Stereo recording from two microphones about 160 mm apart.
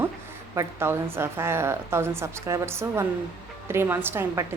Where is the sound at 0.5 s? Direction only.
15° right (ahead or behind).